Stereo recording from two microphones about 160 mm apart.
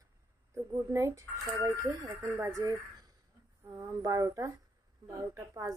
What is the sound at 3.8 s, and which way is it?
Speech, 20° right (ahead or behind).